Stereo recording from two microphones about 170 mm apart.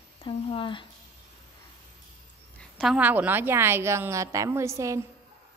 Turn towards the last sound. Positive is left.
turn(degrees=-15)  # may be behind; listen again after turning